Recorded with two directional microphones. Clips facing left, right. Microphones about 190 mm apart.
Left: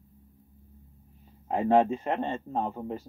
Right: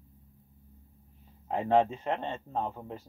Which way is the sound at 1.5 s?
10° left (ahead or behind).